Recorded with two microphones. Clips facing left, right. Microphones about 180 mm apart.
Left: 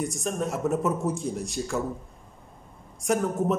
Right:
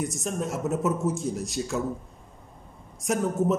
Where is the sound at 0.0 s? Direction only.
Centre (ahead or behind).